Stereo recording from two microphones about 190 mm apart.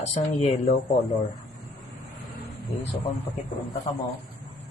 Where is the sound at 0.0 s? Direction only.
35° left (ahead or behind).